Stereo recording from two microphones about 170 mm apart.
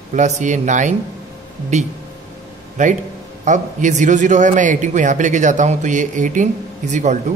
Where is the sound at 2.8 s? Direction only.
45° right (ahead or behind).